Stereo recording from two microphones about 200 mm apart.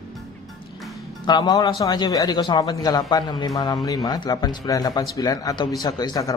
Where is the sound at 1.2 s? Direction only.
20° left (ahead or behind).